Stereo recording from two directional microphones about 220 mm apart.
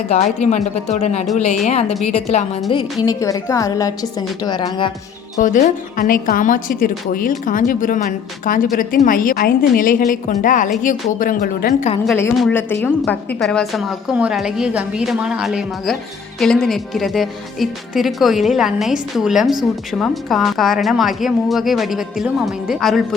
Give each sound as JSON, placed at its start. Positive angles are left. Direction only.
{"t": 0.3, "sound": "a woman's voice", "side_deg": 30}
{"t": 5.4, "sound": "a woman's voice", "side_deg": 35}
{"t": 12.0, "sound": "a woman's voice", "side_deg": 10}